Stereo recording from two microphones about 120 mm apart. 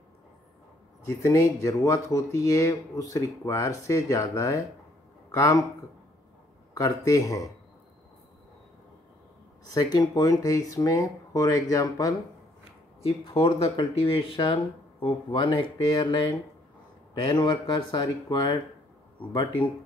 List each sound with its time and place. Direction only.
1.0 s speech: 25° left (ahead or behind)
6.7 s speech: 30° left (ahead or behind)
9.8 s speech: 35° left (ahead or behind)
13.2 s speech: 45° left (ahead or behind)
17.4 s speech: 40° left (ahead or behind)